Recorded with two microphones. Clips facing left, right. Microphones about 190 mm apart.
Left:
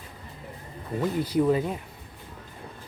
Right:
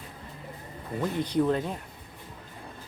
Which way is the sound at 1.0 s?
5° left (ahead or behind).